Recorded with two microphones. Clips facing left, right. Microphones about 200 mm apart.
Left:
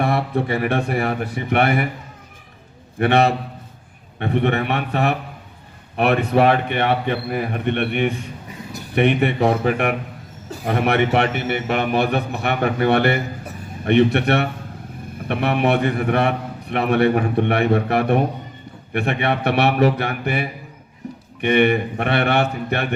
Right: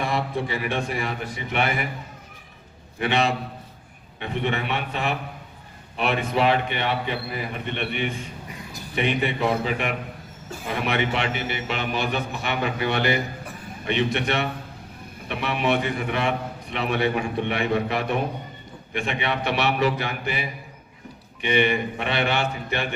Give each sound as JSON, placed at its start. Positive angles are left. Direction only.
{"t": 0.0, "sound": "a man's voice", "side_deg": 60}
{"t": 3.0, "sound": "a man's voice", "side_deg": 60}